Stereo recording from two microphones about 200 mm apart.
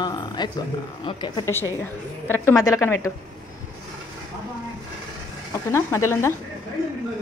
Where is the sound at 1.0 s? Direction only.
20° left (ahead or behind).